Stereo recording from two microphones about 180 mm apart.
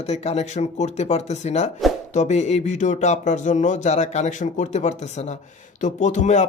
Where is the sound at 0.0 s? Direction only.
35° left (ahead or behind).